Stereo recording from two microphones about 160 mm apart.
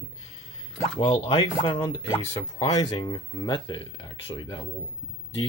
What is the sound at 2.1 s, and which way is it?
Speech, 20° left (ahead or behind).